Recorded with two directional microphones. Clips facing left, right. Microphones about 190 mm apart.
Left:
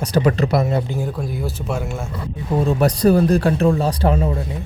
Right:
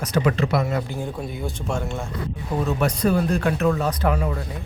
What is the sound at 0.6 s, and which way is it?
Speech, 20° left (ahead or behind).